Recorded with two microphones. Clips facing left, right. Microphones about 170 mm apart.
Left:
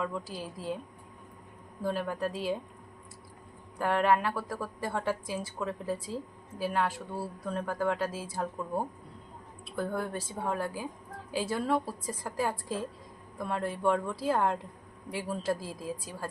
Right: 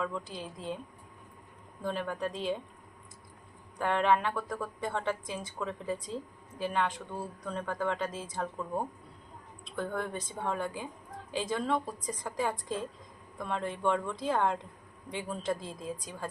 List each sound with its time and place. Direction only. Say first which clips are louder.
0.0 s a woman's voice: left 1 dB; 5° left (ahead or behind)
1.8 s a woman's voice: left 2 dB; 5° left (ahead or behind)
3.8 s a woman's voice: left 1 dB; 5° left (ahead or behind)